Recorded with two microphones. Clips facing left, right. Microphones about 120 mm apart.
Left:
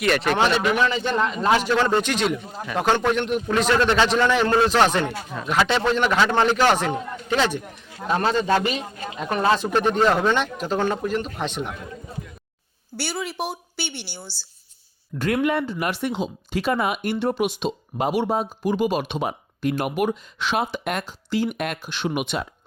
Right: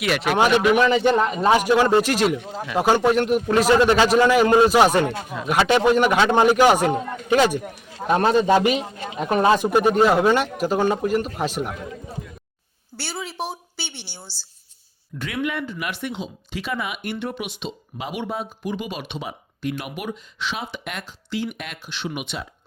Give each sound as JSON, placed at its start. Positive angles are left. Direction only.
{"t": 0.0, "sound": "a woman's voice", "side_deg": -5}
{"t": 15.4, "sound": "speech", "side_deg": 35}